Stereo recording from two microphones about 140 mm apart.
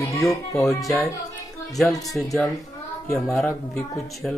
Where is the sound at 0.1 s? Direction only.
25° left (ahead or behind).